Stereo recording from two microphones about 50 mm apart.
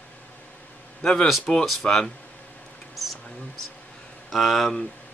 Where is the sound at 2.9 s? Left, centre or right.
Centre.